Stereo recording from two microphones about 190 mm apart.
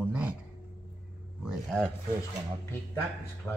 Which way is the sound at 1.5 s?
Centre (ahead or behind).